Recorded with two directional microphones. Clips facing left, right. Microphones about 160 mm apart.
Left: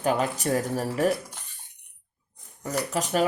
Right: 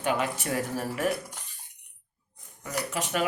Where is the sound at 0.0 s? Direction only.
40° left (ahead or behind).